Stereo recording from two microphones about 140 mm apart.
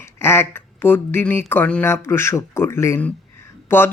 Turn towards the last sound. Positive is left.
turn(degrees=15)  # may be behind; listen again after turning